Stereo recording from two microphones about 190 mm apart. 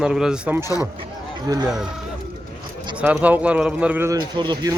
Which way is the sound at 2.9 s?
5° right (ahead or behind).